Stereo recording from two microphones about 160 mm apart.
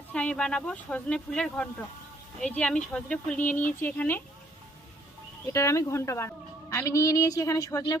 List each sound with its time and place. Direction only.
0.1 s speech: 5° left (ahead or behind)
5.5 s speech: 20° left (ahead or behind)